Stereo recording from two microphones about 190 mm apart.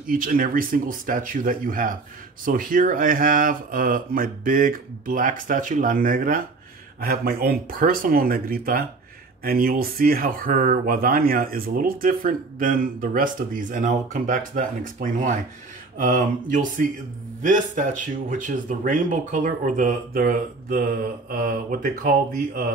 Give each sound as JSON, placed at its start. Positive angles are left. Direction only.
{"t": 0.0, "sound": "speech", "side_deg": -45}